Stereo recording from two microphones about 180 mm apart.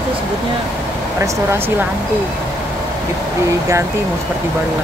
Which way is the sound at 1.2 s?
15° right (ahead or behind).